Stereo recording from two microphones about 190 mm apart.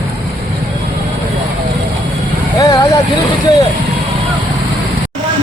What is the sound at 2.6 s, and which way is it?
Speech, 20° left (ahead or behind).